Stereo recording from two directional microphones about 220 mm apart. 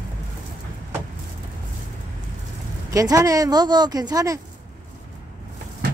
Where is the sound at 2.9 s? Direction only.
15° right (ahead or behind).